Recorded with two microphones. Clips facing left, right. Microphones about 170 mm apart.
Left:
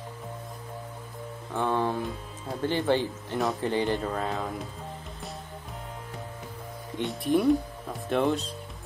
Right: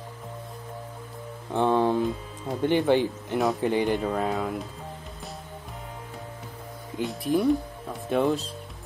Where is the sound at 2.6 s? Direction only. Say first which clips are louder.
Right 4 dB; 15° right (ahead or behind).